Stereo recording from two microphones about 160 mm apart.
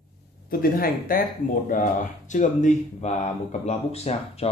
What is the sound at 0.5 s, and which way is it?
Speech, 65° left (ahead or behind).